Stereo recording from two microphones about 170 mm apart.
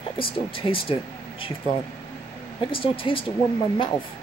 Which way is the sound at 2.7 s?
30° left (ahead or behind).